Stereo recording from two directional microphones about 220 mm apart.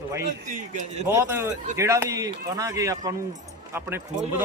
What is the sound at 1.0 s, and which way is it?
Speech, 10° right (ahead or behind).